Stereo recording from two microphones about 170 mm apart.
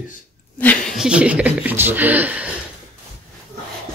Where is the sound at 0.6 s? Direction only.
10° left (ahead or behind).